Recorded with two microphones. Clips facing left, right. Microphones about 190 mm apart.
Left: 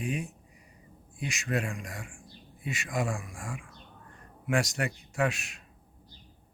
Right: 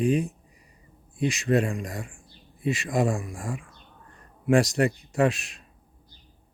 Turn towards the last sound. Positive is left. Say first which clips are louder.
# right 6 dB
turn(degrees=-35)  # may be behind; listen again after turning